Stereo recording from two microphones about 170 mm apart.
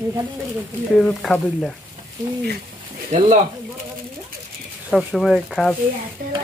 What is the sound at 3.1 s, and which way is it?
Speech, 40° right (ahead or behind).